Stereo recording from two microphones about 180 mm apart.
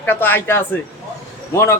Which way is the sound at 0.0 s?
10° left (ahead or behind).